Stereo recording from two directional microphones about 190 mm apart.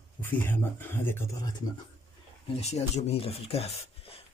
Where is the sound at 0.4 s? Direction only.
10° left (ahead or behind).